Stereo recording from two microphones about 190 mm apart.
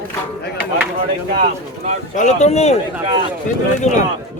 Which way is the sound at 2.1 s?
40° left (ahead or behind).